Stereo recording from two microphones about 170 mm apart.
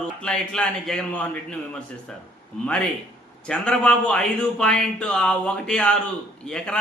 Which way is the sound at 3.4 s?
5° left (ahead or behind).